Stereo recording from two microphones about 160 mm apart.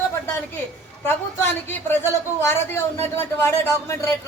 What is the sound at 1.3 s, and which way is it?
Speech, 15° left (ahead or behind).